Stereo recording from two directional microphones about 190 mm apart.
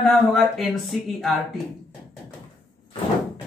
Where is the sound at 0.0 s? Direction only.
Centre (ahead or behind).